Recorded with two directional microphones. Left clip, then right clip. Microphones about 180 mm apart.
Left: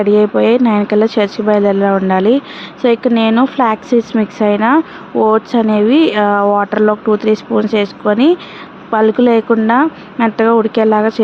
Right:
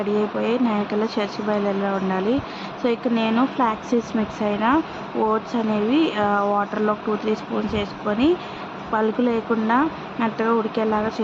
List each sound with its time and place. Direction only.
0.0 s speech: 45° left (ahead or behind)